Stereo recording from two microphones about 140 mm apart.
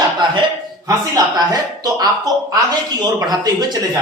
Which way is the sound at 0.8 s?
25° right (ahead or behind).